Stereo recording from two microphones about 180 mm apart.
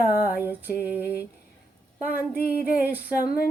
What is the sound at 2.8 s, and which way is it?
Female singing, 10° right (ahead or behind).